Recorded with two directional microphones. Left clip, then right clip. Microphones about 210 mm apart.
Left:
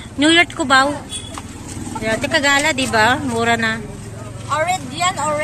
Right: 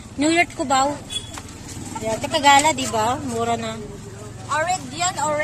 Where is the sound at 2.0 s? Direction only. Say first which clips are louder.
Left 1 dB; 5° right (ahead or behind).